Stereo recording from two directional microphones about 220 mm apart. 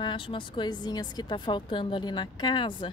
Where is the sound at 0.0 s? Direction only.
20° left (ahead or behind).